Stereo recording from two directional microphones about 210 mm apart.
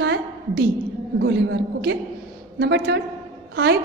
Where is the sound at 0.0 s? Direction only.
55° right (ahead or behind).